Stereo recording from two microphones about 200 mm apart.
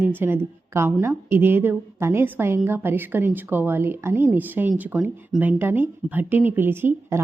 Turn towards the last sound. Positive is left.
turn(degrees=-10)  # may be behind; listen again after turning